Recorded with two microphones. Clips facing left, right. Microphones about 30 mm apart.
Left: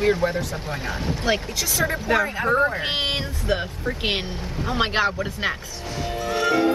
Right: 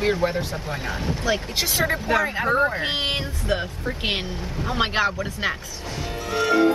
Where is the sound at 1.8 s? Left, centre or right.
Centre.